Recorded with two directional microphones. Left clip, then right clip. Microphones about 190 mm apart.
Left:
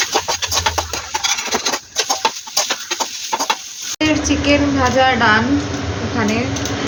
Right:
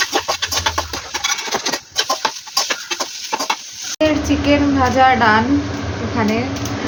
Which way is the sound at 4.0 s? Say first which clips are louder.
Right 1 dB; 10° right (ahead or behind).